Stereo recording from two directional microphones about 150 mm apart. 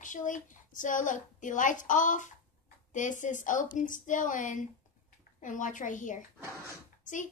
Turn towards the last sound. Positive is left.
turn(degrees=60)  # may be behind; listen again after turning